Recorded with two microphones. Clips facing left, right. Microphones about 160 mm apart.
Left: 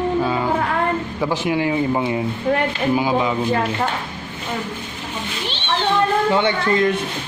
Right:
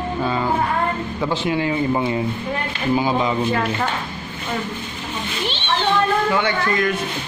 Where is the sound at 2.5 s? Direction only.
70° left (ahead or behind).